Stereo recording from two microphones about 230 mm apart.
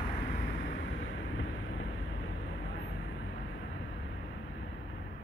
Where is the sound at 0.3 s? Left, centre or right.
Left.